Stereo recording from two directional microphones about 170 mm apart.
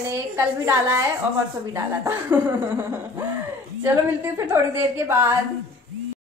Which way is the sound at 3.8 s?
10° right (ahead or behind).